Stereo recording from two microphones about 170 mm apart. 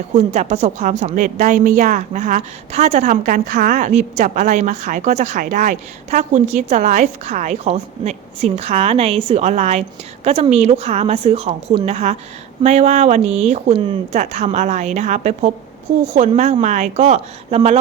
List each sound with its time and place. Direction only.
0.3 s a woman's voice: 40° right (ahead or behind)